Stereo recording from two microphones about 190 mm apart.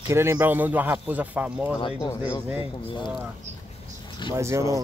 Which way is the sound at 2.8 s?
25° left (ahead or behind).